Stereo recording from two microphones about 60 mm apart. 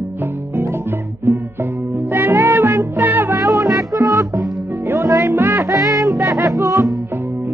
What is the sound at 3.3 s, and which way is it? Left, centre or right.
Music, right.